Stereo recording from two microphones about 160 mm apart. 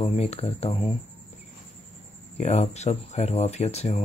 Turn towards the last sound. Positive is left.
turn(degrees=45)  # may be behind; listen again after turning